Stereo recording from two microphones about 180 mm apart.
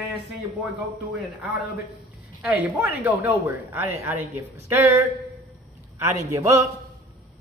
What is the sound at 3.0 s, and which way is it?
A woman's voice, 10° right (ahead or behind).